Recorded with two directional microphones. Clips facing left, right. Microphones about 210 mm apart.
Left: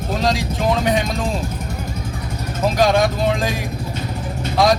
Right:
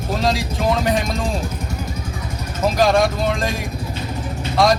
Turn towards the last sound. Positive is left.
turn(degrees=0)  # may be behind; listen again after turning